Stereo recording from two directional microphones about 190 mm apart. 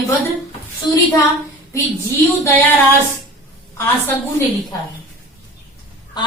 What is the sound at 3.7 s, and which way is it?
Speech, 15° left (ahead or behind).